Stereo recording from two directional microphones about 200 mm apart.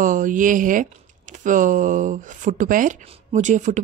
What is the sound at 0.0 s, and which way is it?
Speech, 40° right (ahead or behind).